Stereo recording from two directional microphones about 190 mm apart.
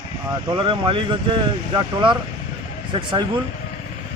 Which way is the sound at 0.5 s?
25° right (ahead or behind).